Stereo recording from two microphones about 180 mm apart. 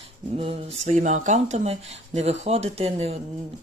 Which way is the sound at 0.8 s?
40° right (ahead or behind).